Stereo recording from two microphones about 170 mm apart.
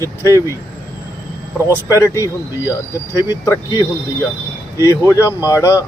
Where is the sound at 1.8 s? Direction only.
20° left (ahead or behind).